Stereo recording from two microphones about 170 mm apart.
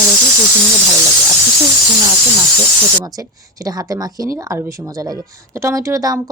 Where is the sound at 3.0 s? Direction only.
20° right (ahead or behind).